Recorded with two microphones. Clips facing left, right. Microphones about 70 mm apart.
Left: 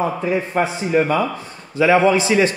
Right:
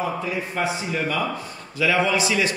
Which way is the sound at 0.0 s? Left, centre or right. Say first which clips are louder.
Left 6 dB; left.